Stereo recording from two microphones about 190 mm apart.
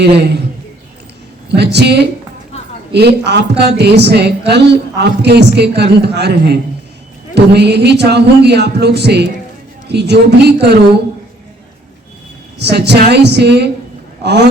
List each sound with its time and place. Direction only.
1.5 s a woman's voice: 60° right (ahead or behind)
12.5 s a woman's voice: 60° right (ahead or behind)